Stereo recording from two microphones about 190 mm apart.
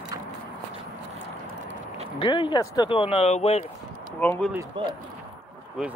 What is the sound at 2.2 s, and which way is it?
Speech, 25° left (ahead or behind).